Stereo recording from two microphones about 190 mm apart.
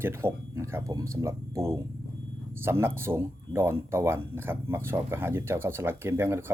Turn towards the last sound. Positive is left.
turn(degrees=-15)  # may be behind; listen again after turning